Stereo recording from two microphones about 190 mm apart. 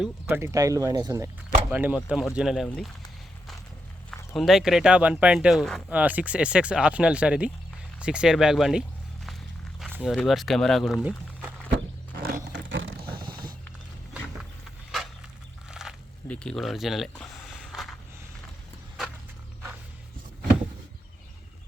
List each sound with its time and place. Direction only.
0.0 s speech: 10° right (ahead or behind)
1.7 s speech: 10° right (ahead or behind)
4.4 s speech: centre (ahead or behind)
9.9 s speech: 5° right (ahead or behind)
12.1 s wild animals: 50° right (ahead or behind)
12.5 s a sound: 80° right
15.7 s a sound: 5° right (ahead or behind)